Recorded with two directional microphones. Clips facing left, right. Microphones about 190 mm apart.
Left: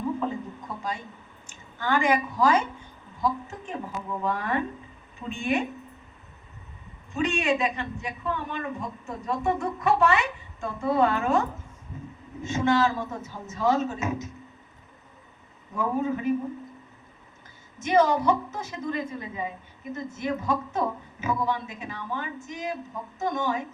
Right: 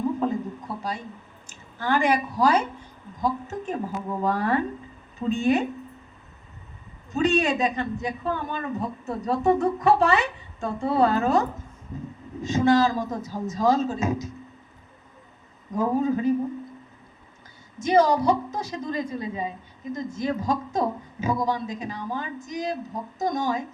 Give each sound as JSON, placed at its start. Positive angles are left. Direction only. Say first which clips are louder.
{"t": 0.3, "sound": "a sound", "louder": "right 5 dB", "side_deg": -35}
{"t": 1.5, "sound": "a woman's voice", "louder": "right 2 dB", "side_deg": -35}
{"t": 7.1, "sound": "a man's voice", "louder": "right 3 dB", "side_deg": -35}
{"t": 15.7, "sound": "a man's voice", "louder": "right 4 dB", "side_deg": -35}
{"t": 17.7, "sound": "a man's voice", "louder": "right 2 dB", "side_deg": -35}